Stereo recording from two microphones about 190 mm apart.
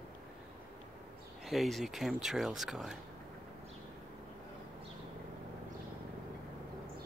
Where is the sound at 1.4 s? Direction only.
Centre (ahead or behind).